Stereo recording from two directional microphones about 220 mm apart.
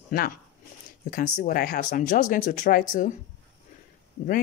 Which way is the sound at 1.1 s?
40° left (ahead or behind).